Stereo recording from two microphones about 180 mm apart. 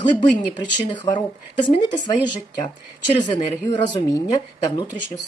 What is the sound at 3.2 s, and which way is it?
Speech, 25° left (ahead or behind).